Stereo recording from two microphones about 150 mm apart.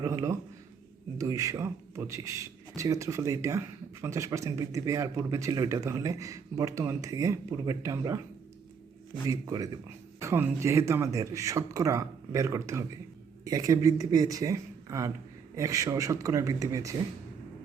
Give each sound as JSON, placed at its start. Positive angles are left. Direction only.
{"t": 0.0, "sound": "a sound", "side_deg": -20}
{"t": 1.2, "sound": "speech", "side_deg": -20}
{"t": 9.2, "sound": "speech", "side_deg": -25}